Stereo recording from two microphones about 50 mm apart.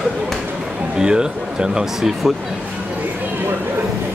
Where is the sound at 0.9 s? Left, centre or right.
Centre.